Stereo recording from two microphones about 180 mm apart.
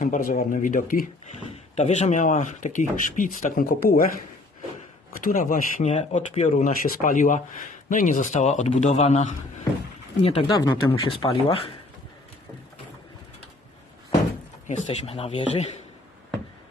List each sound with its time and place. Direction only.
0.0 s speech: 50° left (ahead or behind)
5.2 s speech: 50° left (ahead or behind); by 10.6 s 30° left (ahead or behind)
10.6 s speech: 20° left (ahead or behind)
11.1 s speech: 30° left (ahead or behind)
14.7 s speech: 40° left (ahead or behind)